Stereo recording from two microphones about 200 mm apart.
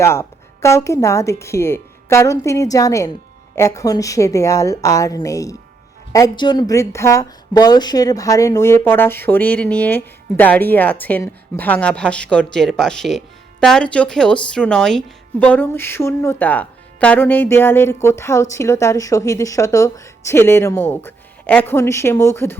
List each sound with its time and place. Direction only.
0.0 s a woman's voice: 15° left (ahead or behind)